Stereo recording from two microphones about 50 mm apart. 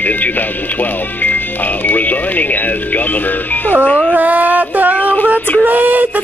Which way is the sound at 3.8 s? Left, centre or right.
Left.